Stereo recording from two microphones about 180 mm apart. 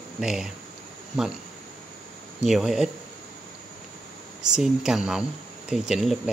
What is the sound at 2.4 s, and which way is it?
Speech, centre (ahead or behind).